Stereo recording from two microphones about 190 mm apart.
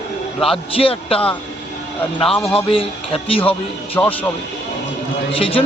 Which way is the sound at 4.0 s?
15° left (ahead or behind).